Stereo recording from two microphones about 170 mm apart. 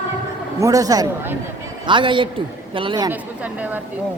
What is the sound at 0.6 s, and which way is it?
Speech, 20° right (ahead or behind).